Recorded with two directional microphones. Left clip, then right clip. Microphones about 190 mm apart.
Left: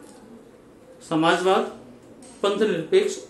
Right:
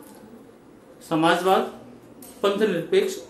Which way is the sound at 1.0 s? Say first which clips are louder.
Even; 10° left (ahead or behind).